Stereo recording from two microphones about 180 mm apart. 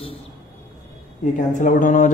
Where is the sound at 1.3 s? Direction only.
45° left (ahead or behind).